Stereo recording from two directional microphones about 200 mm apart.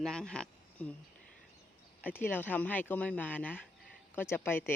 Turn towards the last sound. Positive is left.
turn(degrees=10)  # may be behind; listen again after turning